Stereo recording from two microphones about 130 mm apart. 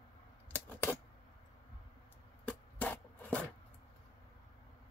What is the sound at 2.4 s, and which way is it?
Rub, 15° left (ahead or behind).